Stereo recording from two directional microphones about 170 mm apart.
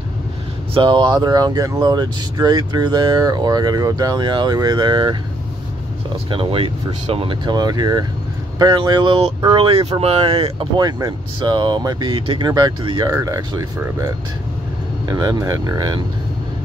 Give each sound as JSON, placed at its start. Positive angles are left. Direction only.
{"t": 0.7, "sound": "speech", "side_deg": -25}
{"t": 6.3, "sound": "speech", "side_deg": -35}